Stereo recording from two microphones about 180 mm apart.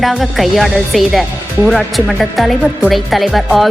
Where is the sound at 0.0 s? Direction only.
Centre (ahead or behind).